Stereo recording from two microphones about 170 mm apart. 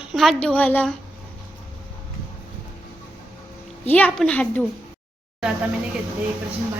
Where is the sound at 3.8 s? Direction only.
10° left (ahead or behind).